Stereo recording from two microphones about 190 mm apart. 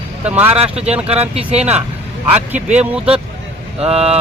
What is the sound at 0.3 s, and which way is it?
Speech, 10° right (ahead or behind).